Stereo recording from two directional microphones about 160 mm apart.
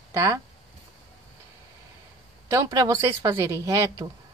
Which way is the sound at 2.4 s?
20° right (ahead or behind).